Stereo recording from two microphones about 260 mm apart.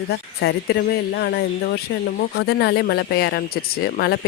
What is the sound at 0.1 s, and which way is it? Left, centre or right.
Speech, left.